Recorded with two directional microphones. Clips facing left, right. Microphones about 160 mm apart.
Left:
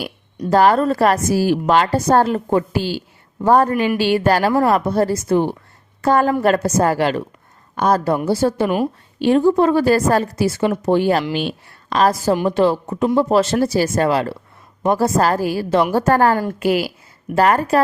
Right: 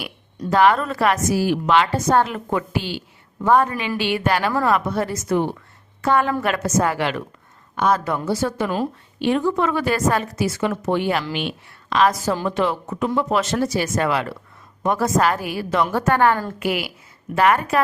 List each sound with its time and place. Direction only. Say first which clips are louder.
0.5 s a woman's voice: left 3 dB; 35° left (ahead or behind)